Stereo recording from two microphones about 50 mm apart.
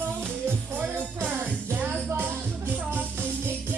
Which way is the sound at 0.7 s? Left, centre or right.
Right.